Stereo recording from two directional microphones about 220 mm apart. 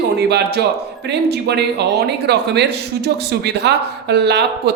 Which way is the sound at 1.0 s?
50° right (ahead or behind).